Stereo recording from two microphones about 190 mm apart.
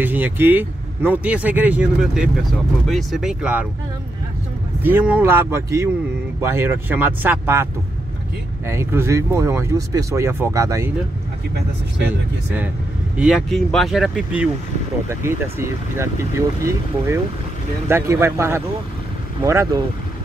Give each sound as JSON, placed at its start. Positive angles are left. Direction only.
{"t": 0.0, "sound": "speech", "side_deg": -10}
{"t": 4.8, "sound": "speech", "side_deg": -10}
{"t": 8.6, "sound": "speech", "side_deg": -15}
{"t": 13.2, "sound": "speech", "side_deg": 0}